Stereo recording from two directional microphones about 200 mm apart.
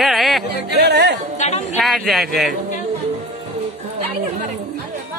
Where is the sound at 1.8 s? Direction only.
Centre (ahead or behind).